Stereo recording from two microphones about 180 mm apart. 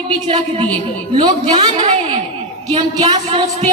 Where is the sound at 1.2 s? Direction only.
25° right (ahead or behind).